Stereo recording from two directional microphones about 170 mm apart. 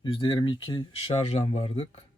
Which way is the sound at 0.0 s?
30° left (ahead or behind).